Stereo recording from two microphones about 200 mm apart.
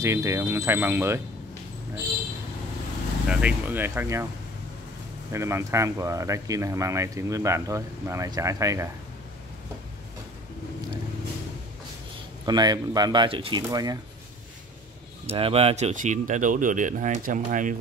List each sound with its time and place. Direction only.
0.0 s speech: 15° right (ahead or behind)
3.3 s speech: 5° right (ahead or behind)
5.3 s speech: 15° right (ahead or behind)
12.4 s speech: 20° right (ahead or behind)
15.2 s speech: 30° right (ahead or behind)